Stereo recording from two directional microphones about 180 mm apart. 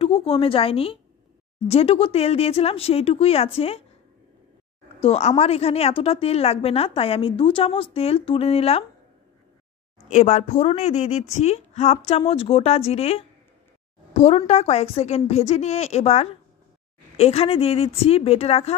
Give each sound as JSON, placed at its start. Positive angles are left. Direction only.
{"t": 0.0, "sound": "a woman's voice", "side_deg": 30}
{"t": 5.0, "sound": "a woman's voice", "side_deg": 35}
{"t": 10.0, "sound": "a woman's voice", "side_deg": 40}